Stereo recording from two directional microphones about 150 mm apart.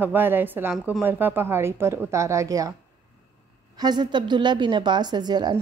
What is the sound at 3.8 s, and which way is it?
Speech, 30° right (ahead or behind).